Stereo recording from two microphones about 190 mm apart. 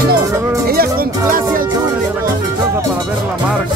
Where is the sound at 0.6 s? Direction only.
50° right (ahead or behind).